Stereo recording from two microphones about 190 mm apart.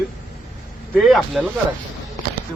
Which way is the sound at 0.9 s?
Centre (ahead or behind).